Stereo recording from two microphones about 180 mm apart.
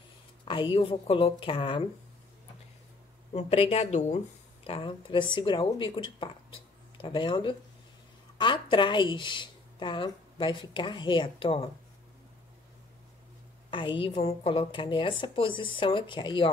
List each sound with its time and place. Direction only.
0.5 s speech: 30° left (ahead or behind)
3.3 s speech: 35° left (ahead or behind)
4.6 s speech: 30° left (ahead or behind)
13.7 s speech: 30° left (ahead or behind)